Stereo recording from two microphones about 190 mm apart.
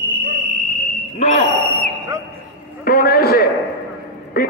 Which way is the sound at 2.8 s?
50° left (ahead or behind).